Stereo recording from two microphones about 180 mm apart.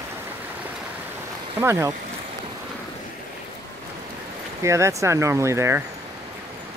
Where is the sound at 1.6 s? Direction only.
15° right (ahead or behind).